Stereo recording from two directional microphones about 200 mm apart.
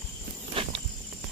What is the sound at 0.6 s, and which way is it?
Insect, 25° right (ahead or behind).